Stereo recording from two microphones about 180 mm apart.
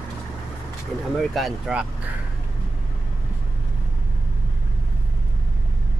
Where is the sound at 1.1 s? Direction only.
Centre (ahead or behind).